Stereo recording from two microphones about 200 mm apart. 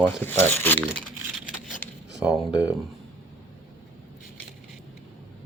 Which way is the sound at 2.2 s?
5° right (ahead or behind).